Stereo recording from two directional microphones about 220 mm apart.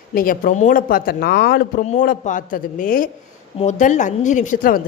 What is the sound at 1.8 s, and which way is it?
A woman's voice, 35° left (ahead or behind).